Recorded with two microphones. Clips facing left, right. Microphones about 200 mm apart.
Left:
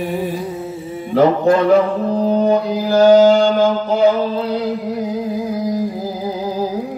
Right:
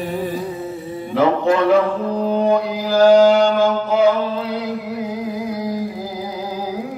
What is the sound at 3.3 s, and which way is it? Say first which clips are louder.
Music: left 1 dB; 40° left (ahead or behind).